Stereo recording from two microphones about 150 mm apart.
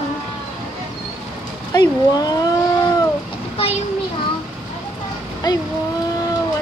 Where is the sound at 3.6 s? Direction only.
40° left (ahead or behind).